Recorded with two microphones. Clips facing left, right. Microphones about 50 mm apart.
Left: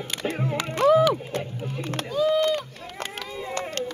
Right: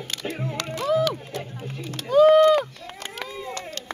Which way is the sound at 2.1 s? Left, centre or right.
Right.